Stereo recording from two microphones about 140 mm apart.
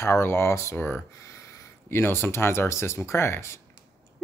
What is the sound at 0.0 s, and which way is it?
Speech, 15° left (ahead or behind).